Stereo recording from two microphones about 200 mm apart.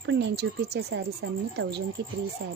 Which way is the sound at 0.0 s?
65° right (ahead or behind).